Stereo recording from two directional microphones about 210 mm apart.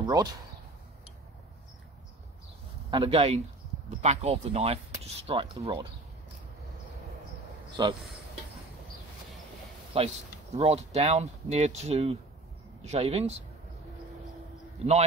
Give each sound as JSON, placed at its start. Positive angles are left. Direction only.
{"t": 0.0, "sound": "speech", "side_deg": -20}
{"t": 2.9, "sound": "speech", "side_deg": -25}
{"t": 7.8, "sound": "speech", "side_deg": -20}
{"t": 9.9, "sound": "speech", "side_deg": -30}
{"t": 14.8, "sound": "a man's voice", "side_deg": -30}